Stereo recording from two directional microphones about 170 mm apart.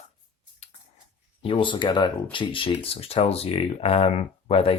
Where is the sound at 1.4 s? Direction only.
30° left (ahead or behind).